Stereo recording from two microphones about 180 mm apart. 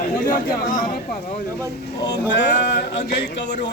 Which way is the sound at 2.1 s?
75° left (ahead or behind).